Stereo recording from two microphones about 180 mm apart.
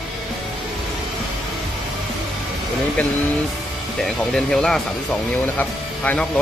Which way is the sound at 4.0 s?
5° left (ahead or behind).